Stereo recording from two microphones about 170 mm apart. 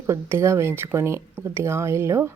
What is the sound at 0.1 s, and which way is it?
A woman's voice, 15° right (ahead or behind).